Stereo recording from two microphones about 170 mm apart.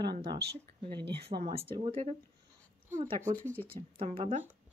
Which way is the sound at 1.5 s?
35° right (ahead or behind).